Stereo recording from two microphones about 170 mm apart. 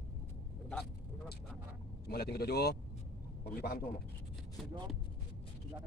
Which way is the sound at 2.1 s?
65° left (ahead or behind).